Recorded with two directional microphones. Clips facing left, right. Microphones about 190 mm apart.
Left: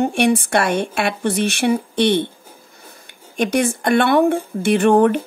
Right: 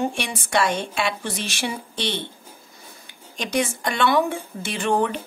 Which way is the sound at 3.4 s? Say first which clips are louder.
Left 6 dB; 55° left (ahead or behind).